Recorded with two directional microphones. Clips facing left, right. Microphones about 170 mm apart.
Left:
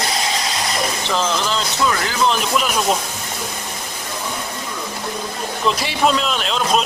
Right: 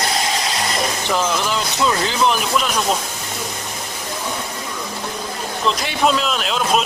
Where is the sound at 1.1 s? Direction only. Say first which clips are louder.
Right 1 dB; 10° right (ahead or behind).